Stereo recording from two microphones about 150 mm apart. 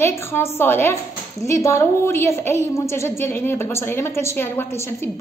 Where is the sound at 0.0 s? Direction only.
15° left (ahead or behind).